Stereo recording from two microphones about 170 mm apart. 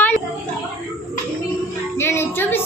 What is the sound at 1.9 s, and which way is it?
Speech, 15° left (ahead or behind).